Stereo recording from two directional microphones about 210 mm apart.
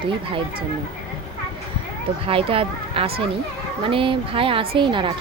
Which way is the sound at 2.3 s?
25° right (ahead or behind).